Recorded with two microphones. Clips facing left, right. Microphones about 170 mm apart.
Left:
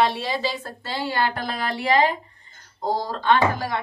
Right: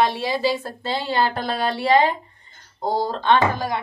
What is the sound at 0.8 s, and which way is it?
Speech, 20° right (ahead or behind).